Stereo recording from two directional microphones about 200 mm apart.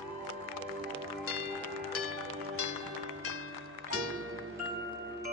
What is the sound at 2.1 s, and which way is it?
Music, 90° right.